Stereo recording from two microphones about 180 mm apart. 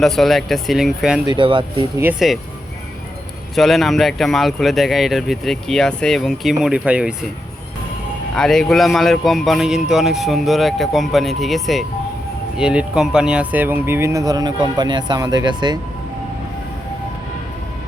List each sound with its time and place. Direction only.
0.0 s speech: centre (ahead or behind)
1.3 s speech: 25° right (ahead or behind)
2.0 s speech: 5° right (ahead or behind)
3.5 s speech: centre (ahead or behind)
8.4 s speech: centre (ahead or behind); by 15.8 s 20° right (ahead or behind)